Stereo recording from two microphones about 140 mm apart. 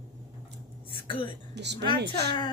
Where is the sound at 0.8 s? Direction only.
40° left (ahead or behind).